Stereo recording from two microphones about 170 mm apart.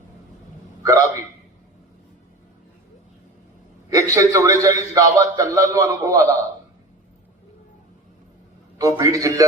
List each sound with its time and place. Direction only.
0.8 s hiccup: 20° right (ahead or behind)
3.8 s a man's voice: 20° right (ahead or behind)
8.8 s a man's voice: 20° right (ahead or behind)